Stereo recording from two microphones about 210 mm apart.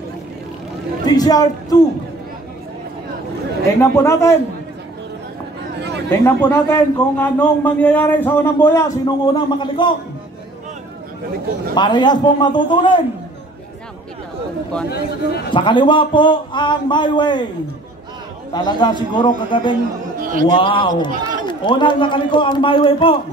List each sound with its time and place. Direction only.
1.0 s a man's voice: 20° left (ahead or behind)
3.9 s a man's voice: 15° left (ahead or behind)
5.8 s a sound: 55° right (ahead or behind)
6.2 s a man's voice: 10° left (ahead or behind)
11.7 s a man's voice: 20° left (ahead or behind)
14.9 s speech: 50° left (ahead or behind)
15.5 s a man's voice: 25° left (ahead or behind)
18.5 s a man's voice: 20° left (ahead or behind)
20.2 s a sound: 40° right (ahead or behind)
20.4 s a man's voice: 25° left (ahead or behind)
21.1 s run: 40° right (ahead or behind)
21.5 s a man's voice: 20° left (ahead or behind)